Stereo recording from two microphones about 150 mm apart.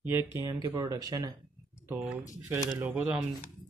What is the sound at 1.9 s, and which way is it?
Speech, 5° right (ahead or behind).